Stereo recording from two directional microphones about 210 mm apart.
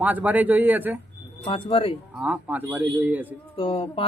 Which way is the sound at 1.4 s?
25° left (ahead or behind).